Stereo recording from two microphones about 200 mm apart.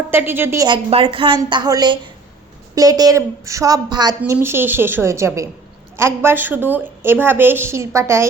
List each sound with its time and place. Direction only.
0.1 s a woman's voice: 10° right (ahead or behind)
0.9 s a woman's voice: 25° right (ahead or behind)
4.2 s a woman's voice: 10° right (ahead or behind)